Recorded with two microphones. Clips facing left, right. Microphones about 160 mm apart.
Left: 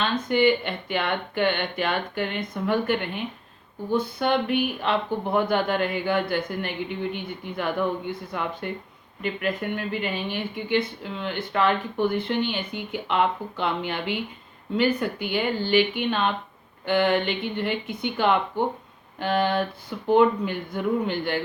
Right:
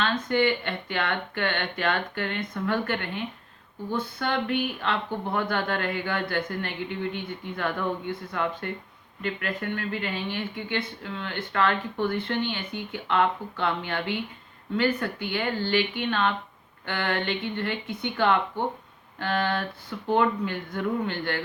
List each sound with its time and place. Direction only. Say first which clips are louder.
0.0 s speech: left 3 dB; 10° left (ahead or behind)